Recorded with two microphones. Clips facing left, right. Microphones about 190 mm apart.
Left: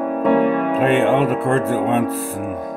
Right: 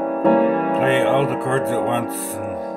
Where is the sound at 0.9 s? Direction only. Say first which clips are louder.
Left 1 dB; 45° left (ahead or behind).